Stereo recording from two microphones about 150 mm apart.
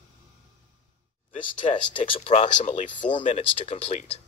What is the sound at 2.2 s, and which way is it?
Speech, 50° left (ahead or behind).